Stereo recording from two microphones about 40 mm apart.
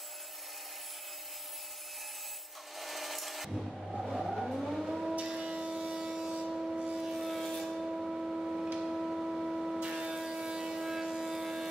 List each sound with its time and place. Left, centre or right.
2.8 s vehicle: centre
5.1 s vehicle: right
6.3 s train: right
7.1 s vehicle: centre
7.8 s vehicle: centre
8.7 s printer: centre
9.8 s vehicle: right; by 11.6 s centre